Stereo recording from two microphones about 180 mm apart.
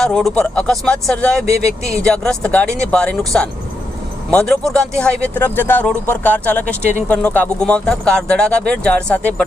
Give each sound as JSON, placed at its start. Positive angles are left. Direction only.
{"t": 0.0, "sound": "speech", "side_deg": 0}
{"t": 1.8, "sound": "speech", "side_deg": -15}
{"t": 2.0, "sound": "speech", "side_deg": 5}